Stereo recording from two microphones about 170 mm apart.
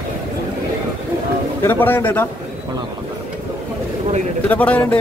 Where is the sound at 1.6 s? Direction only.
10° left (ahead or behind).